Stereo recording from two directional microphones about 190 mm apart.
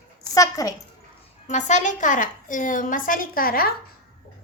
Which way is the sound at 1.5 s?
40° left (ahead or behind).